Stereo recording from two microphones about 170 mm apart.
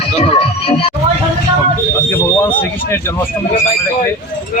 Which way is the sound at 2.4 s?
10° left (ahead or behind).